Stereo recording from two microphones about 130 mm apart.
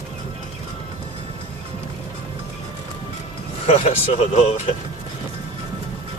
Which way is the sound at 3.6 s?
55° left (ahead or behind).